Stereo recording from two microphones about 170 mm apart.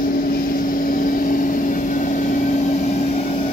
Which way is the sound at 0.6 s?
55° left (ahead or behind).